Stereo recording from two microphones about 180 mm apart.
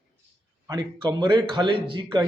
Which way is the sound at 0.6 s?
25° right (ahead or behind).